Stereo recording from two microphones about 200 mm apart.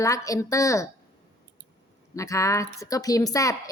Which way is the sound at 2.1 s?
15° left (ahead or behind).